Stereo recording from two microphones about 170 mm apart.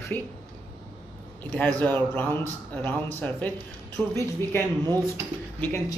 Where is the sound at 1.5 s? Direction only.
10° left (ahead or behind).